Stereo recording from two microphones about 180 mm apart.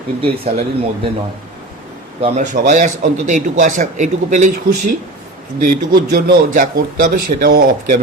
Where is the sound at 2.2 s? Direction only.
40° right (ahead or behind).